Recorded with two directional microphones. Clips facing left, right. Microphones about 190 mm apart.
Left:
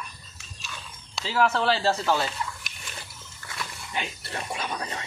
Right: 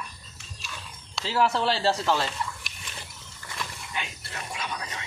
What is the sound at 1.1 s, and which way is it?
Speech, centre (ahead or behind).